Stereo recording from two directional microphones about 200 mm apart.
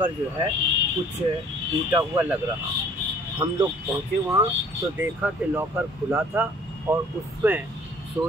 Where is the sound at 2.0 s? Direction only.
10° right (ahead or behind).